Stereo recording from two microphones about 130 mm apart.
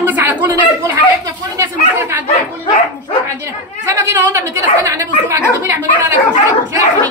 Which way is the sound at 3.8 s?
25° right (ahead or behind).